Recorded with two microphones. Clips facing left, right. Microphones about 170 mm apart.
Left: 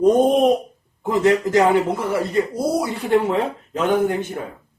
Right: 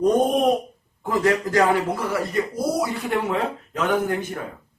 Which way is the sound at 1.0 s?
25° left (ahead or behind).